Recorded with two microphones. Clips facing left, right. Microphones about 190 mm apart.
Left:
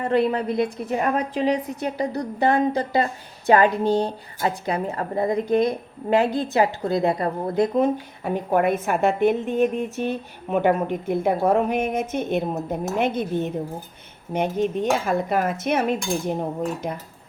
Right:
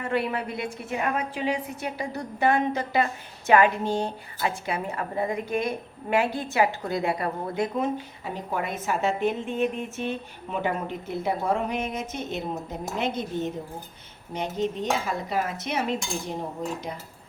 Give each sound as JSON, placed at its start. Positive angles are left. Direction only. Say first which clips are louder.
{"t": 0.0, "sound": "a woman's voice", "louder": "left 6 dB", "side_deg": 35}
{"t": 8.2, "sound": "speech", "louder": "left 13 dB", "side_deg": 55}
{"t": 9.5, "sound": "speech", "louder": "left 6 dB", "side_deg": 40}